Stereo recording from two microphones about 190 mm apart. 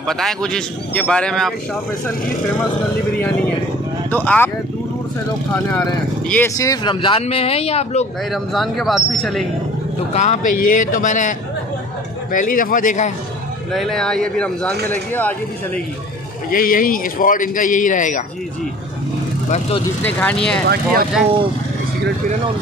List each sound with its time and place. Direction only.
0.0 s speech: centre (ahead or behind)
3.2 s speech: 5° left (ahead or behind)
5.7 s speech: 15° left (ahead or behind); by 8.1 s 35° left (ahead or behind)
8.3 s speech: centre (ahead or behind)
10.1 s a man's voice: 40° left (ahead or behind)
13.7 s speech: centre (ahead or behind)
16.4 s a man's voice: 50° left (ahead or behind)
20.0 s speech: 10° left (ahead or behind)
20.6 s speech: 55° right (ahead or behind)